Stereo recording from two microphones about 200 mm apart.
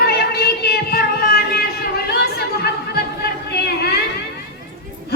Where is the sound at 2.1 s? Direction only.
50° left (ahead or behind).